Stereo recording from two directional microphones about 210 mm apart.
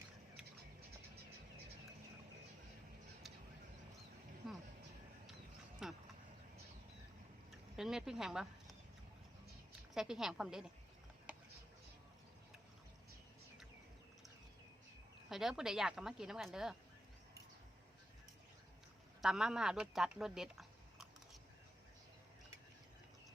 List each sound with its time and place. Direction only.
5.8 s a sound: centre (ahead or behind)
7.5 s speech: centre (ahead or behind)
9.9 s a woman's voice: centre (ahead or behind)
15.3 s a woman's voice: centre (ahead or behind)
19.2 s speech: centre (ahead or behind)